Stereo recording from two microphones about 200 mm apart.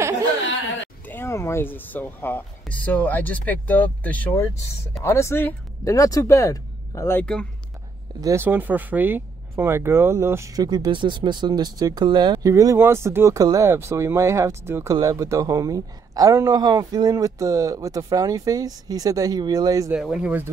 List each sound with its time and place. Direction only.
1.0 s speech: 10° left (ahead or behind)
8.2 s speech: 15° right (ahead or behind)
20.0 s speech: 5° right (ahead or behind)